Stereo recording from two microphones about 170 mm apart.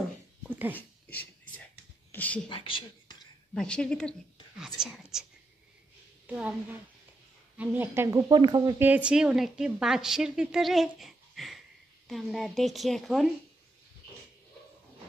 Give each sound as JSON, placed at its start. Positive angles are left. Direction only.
{"t": 0.4, "sound": "dog", "side_deg": -10}
{"t": 0.7, "sound": "a sound", "side_deg": 10}
{"t": 2.1, "sound": "speech", "side_deg": 10}
{"t": 2.5, "sound": "speech", "side_deg": 30}
{"t": 3.5, "sound": "a woman's voice", "side_deg": 5}
{"t": 6.2, "sound": "a woman's voice", "side_deg": -10}
{"t": 7.5, "sound": "a woman's voice", "side_deg": -10}
{"t": 8.3, "sound": "speech", "side_deg": -25}
{"t": 8.8, "sound": "a woman's voice", "side_deg": -10}